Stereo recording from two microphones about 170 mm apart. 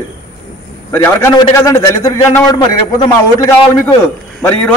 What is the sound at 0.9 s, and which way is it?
A man's voice, 15° left (ahead or behind).